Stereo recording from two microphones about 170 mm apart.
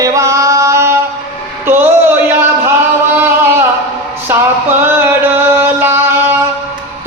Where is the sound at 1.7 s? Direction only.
10° right (ahead or behind).